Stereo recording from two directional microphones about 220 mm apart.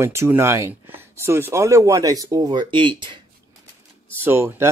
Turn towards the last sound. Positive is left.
turn(degrees=-10)  # may be behind; listen again after turning